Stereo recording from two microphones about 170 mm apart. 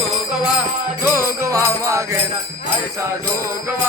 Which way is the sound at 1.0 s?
15° right (ahead or behind).